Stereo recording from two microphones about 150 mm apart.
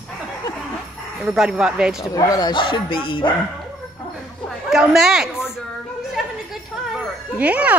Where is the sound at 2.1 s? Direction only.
25° left (ahead or behind).